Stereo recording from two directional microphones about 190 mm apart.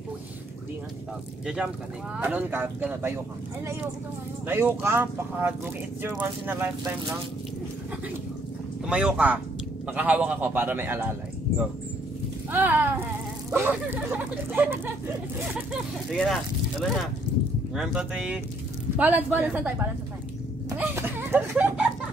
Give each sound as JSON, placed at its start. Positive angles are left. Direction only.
{"t": 1.4, "sound": "speech", "side_deg": -5}
{"t": 4.5, "sound": "speech", "side_deg": -10}
{"t": 8.8, "sound": "speech", "side_deg": -5}
{"t": 12.4, "sound": "speech", "side_deg": -10}
{"t": 16.1, "sound": "speech", "side_deg": 0}
{"t": 20.7, "sound": "a sound", "side_deg": -10}